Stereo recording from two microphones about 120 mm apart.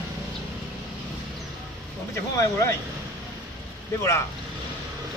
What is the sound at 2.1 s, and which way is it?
Speech, 25° left (ahead or behind).